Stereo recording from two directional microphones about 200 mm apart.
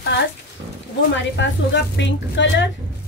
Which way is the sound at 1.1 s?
60° left (ahead or behind).